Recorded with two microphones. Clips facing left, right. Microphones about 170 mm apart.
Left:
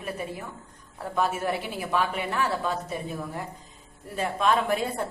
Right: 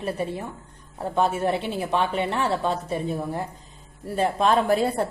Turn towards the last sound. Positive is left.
turn(degrees=-35)  # may be behind; listen again after turning